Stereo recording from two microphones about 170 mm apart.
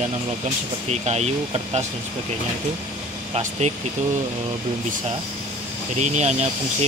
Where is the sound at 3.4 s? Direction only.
40° right (ahead or behind).